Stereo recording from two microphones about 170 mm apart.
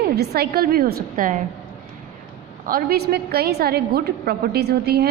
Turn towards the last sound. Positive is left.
turn(degrees=-70)  # may be behind; listen again after turning